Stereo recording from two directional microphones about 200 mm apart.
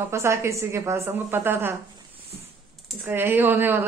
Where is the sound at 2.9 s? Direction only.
10° right (ahead or behind).